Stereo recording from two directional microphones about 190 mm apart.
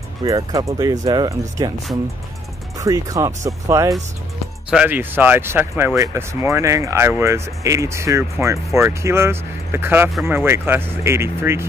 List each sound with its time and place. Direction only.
0.2 s speech: 15° right (ahead or behind)
2.8 s speech: 20° right (ahead or behind)